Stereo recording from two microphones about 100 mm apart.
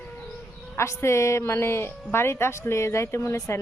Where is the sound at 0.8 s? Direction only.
25° left (ahead or behind).